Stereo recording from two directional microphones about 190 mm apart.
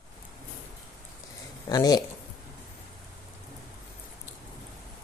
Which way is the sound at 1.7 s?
20° left (ahead or behind).